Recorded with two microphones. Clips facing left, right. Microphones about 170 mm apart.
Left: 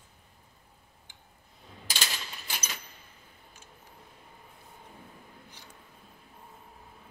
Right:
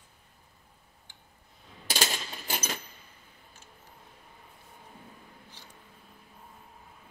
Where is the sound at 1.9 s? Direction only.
45° right (ahead or behind).